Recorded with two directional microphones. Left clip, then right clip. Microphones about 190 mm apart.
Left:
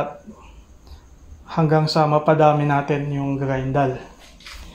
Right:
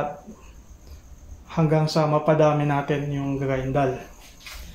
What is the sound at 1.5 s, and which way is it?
Speech, 20° left (ahead or behind).